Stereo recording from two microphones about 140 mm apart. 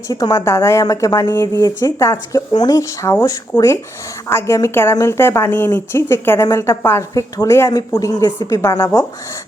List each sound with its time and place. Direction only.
0.1 s a woman's voice: 25° left (ahead or behind)